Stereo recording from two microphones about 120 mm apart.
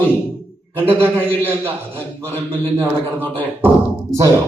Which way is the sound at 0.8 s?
15° right (ahead or behind).